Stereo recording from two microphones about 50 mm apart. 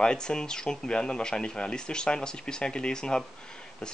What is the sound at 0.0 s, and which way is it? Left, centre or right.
Speech, centre.